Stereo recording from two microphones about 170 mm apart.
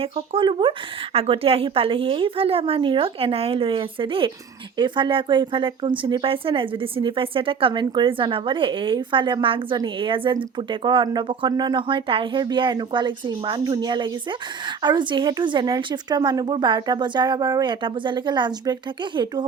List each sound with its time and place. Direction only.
0.0 s a woman's voice: 30° right (ahead or behind)